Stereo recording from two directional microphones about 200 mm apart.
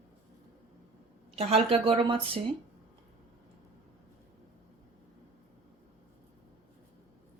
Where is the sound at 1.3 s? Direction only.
30° right (ahead or behind).